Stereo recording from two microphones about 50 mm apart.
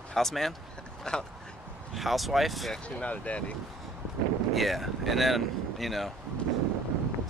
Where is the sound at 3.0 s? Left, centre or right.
Left.